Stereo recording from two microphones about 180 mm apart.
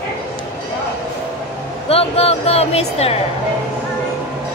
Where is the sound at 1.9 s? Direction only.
35° left (ahead or behind).